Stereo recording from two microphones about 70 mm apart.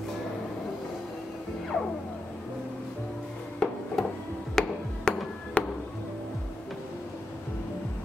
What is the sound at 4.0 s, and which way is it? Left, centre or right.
Music, centre.